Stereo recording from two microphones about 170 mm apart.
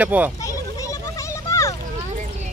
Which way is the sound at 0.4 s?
20° left (ahead or behind).